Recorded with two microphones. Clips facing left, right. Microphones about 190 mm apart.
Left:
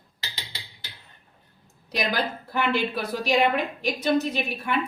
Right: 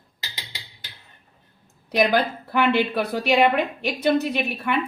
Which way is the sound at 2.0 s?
60° right (ahead or behind).